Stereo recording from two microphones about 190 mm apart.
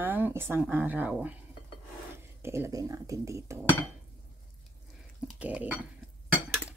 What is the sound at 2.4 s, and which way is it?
Speech, 15° right (ahead or behind).